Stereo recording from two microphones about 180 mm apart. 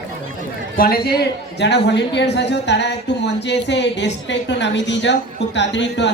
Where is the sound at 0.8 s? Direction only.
55° left (ahead or behind).